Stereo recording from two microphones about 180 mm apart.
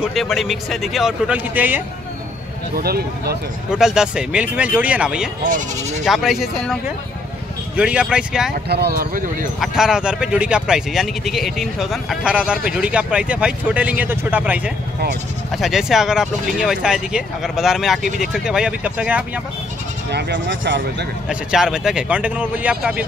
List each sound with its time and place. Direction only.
0.0 s speech: centre (ahead or behind)
2.7 s speech: 60° right (ahead or behind)
3.7 s speech: 5° right (ahead or behind)
5.4 s speech: 45° right (ahead or behind)
6.0 s speech: centre (ahead or behind)
8.6 s speech: 65° right (ahead or behind)
9.6 s speech: 5° right (ahead or behind)
20.1 s speech: 70° right (ahead or behind)
21.3 s speech: 5° right (ahead or behind)